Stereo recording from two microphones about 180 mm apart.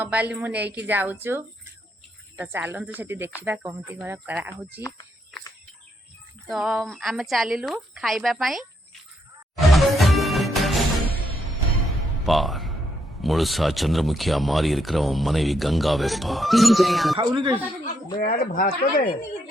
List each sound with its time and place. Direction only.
0.0 s speech: 10° right (ahead or behind)
6.5 s speech: centre (ahead or behind)
9.6 s music: centre (ahead or behind)
12.2 s speech: centre (ahead or behind)
17.2 s speech: 25° right (ahead or behind)
18.2 s speech: 50° left (ahead or behind)